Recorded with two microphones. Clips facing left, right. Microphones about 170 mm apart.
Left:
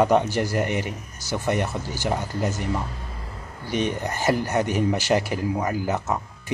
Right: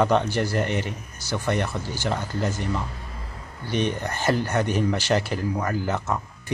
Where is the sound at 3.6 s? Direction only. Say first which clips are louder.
Even; 15° left (ahead or behind).